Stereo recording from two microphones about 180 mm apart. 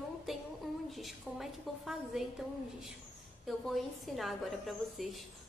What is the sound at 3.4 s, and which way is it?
A woman's voice, centre (ahead or behind).